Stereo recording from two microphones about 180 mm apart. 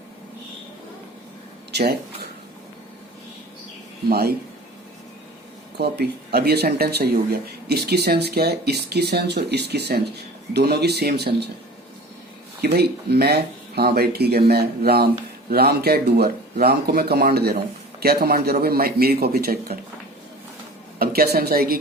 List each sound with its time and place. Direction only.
1.7 s speech: 65° right (ahead or behind)
4.1 s speech: 60° right (ahead or behind)
5.7 s speech: 65° right (ahead or behind)
12.6 s speech: 65° right (ahead or behind)
21.0 s speech: 60° right (ahead or behind)